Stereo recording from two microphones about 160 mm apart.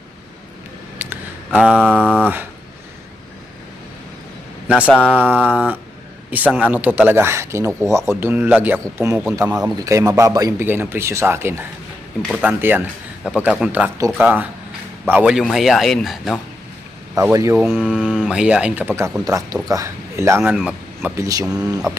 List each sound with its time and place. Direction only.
0.9 s a sound: 10° right (ahead or behind)
2.1 s speech: 10° right (ahead or behind)
4.9 s a sound: 10° left (ahead or behind)
5.1 s speech: 10° right (ahead or behind)
17.2 s speech: 20° right (ahead or behind)
17.7 s speech: centre (ahead or behind); by 20.4 s 15° right (ahead or behind)
20.4 s speech: 5° right (ahead or behind)
21.2 s speech: 20° right (ahead or behind)